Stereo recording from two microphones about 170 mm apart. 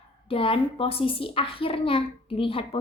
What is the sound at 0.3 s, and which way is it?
A woman's voice, 30° left (ahead or behind).